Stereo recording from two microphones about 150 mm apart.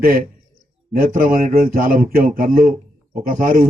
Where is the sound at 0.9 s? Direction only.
70° right (ahead or behind).